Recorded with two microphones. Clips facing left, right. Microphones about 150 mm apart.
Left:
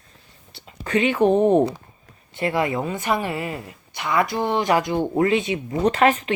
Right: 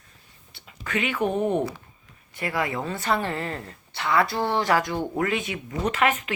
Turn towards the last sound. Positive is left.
turn(degrees=30)  # may be behind; listen again after turning